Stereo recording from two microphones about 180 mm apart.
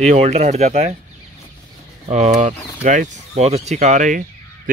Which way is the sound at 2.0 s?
40° right (ahead or behind).